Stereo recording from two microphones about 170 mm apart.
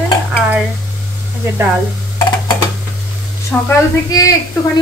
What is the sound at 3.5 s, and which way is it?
Speech, 10° left (ahead or behind).